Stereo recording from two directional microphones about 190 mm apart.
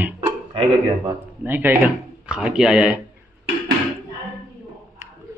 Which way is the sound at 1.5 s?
10° right (ahead or behind).